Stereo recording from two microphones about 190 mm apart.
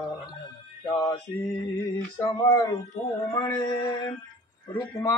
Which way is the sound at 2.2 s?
20° left (ahead or behind).